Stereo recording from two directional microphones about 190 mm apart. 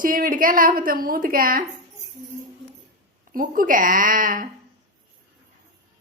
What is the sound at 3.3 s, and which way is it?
Speech, 45° right (ahead or behind).